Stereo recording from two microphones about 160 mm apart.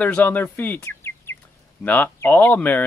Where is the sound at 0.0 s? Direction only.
10° left (ahead or behind).